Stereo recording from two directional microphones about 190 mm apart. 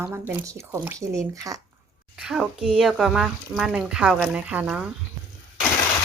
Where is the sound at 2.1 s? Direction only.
5° right (ahead or behind).